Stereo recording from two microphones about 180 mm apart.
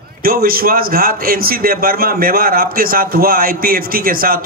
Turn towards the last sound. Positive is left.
turn(degrees=-55)  # may be behind; listen again after turning